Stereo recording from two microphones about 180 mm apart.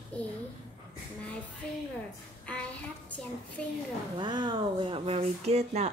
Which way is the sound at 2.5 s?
5° left (ahead or behind).